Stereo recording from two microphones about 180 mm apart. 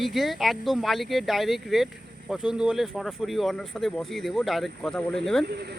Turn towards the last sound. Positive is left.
turn(degrees=0)  # may be behind; listen again after turning